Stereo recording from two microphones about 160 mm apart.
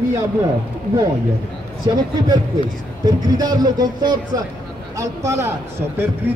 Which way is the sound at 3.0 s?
25° right (ahead or behind).